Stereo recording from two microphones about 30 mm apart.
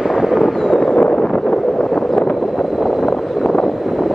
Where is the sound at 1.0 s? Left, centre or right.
Left.